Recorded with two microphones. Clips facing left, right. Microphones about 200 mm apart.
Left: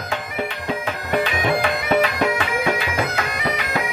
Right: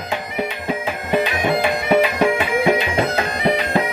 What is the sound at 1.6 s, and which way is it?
Music, 25° right (ahead or behind).